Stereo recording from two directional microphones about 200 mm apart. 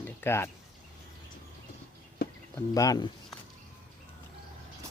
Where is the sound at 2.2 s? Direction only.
50° left (ahead or behind).